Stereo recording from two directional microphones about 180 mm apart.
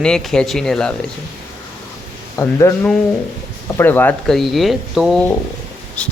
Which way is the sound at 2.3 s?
15° left (ahead or behind).